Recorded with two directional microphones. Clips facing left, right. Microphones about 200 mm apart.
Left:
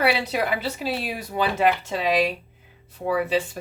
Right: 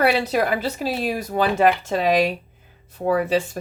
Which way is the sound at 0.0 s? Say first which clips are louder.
Right 4 dB; 45° right (ahead or behind).